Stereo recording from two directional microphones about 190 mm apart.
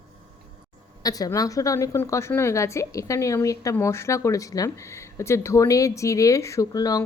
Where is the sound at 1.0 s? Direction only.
20° left (ahead or behind).